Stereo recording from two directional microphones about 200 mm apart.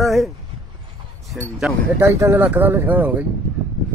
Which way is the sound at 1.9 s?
15° right (ahead or behind).